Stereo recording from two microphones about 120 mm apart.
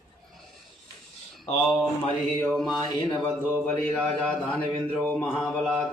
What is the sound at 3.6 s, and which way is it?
A man's voice, 10° left (ahead or behind).